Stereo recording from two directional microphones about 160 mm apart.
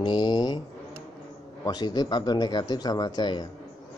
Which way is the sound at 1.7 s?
25° left (ahead or behind).